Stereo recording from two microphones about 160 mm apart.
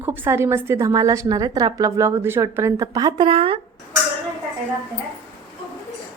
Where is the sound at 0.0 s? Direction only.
15° right (ahead or behind); by 3.6 s 35° right (ahead or behind).